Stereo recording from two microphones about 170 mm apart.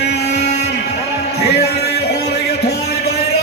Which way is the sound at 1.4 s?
70° left (ahead or behind).